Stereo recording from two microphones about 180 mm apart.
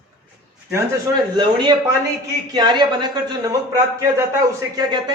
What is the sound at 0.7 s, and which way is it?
Speech, 15° right (ahead or behind).